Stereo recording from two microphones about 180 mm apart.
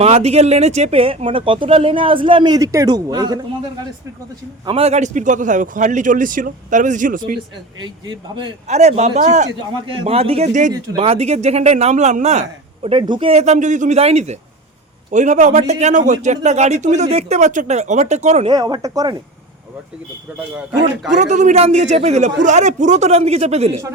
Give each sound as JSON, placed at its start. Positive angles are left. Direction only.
{"t": 0.0, "sound": "speech", "side_deg": -35}
{"t": 4.6, "sound": "a man's voice", "side_deg": -30}
{"t": 7.8, "sound": "speech", "side_deg": -25}
{"t": 8.6, "sound": "speech", "side_deg": -35}
{"t": 9.8, "sound": "speech", "side_deg": -30}
{"t": 18.5, "sound": "speech", "side_deg": -20}
{"t": 21.2, "sound": "speech", "side_deg": -40}